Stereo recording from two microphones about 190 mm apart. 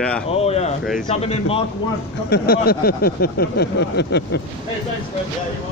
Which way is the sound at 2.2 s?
55° left (ahead or behind).